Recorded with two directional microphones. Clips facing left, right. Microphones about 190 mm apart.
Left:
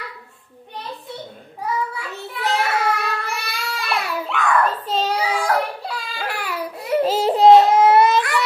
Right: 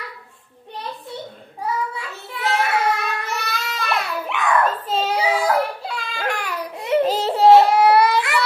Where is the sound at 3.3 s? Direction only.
10° left (ahead or behind).